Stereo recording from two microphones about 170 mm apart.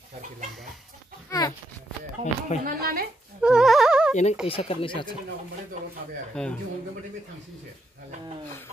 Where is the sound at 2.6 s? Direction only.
65° right (ahead or behind).